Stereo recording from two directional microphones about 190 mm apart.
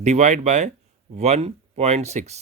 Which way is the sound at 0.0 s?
40° right (ahead or behind).